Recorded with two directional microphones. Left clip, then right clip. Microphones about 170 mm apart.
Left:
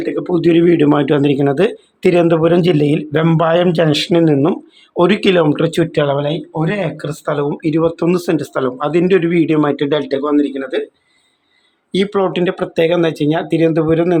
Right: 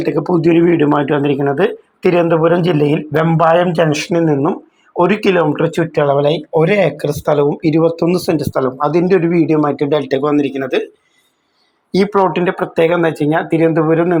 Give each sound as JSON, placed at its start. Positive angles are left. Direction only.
{"t": 0.3, "sound": "speech", "side_deg": 15}
{"t": 6.1, "sound": "speech", "side_deg": -5}
{"t": 10.1, "sound": "speech", "side_deg": -5}
{"t": 11.9, "sound": "speech", "side_deg": 20}